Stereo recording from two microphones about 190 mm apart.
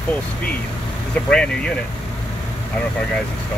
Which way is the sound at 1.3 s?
5° left (ahead or behind).